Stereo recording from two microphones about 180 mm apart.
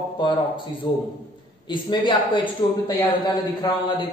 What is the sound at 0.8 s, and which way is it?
A man's voice, 25° left (ahead or behind).